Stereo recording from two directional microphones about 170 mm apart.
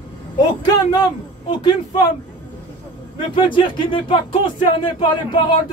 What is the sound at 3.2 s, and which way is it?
Speech, 30° left (ahead or behind).